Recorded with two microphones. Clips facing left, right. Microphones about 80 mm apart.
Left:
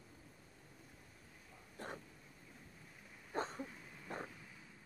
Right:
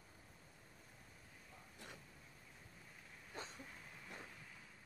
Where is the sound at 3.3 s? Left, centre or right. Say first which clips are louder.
Left 11 dB; left.